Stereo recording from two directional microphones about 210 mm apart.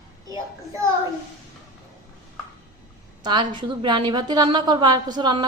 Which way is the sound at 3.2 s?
20° right (ahead or behind).